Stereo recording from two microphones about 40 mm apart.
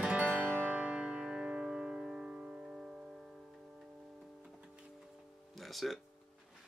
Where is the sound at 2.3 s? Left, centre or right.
Centre.